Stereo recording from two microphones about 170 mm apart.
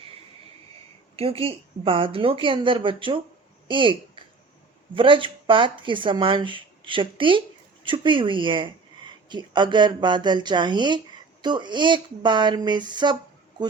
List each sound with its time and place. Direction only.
1.1 s a woman's voice: 35° right (ahead or behind)